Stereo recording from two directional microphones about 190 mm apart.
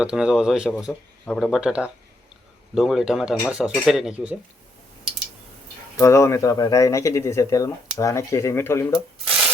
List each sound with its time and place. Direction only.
0.0 s speech: 5° right (ahead or behind)
6.0 s speech: 15° left (ahead or behind)